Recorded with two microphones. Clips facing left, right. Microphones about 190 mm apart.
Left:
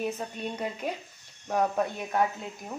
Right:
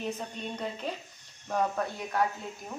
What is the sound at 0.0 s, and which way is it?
Speech, 10° left (ahead or behind).